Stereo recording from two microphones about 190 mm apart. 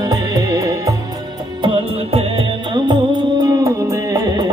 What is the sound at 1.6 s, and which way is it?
Music, 30° right (ahead or behind).